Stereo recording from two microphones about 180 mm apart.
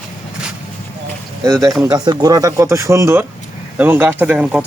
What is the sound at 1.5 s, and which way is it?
A man's voice, 20° right (ahead or behind).